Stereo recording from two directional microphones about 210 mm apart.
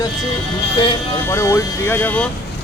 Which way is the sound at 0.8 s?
25° left (ahead or behind).